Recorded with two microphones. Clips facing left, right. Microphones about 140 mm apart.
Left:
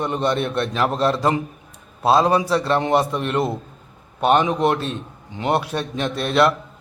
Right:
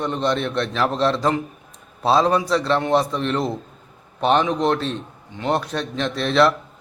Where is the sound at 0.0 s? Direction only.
10° left (ahead or behind).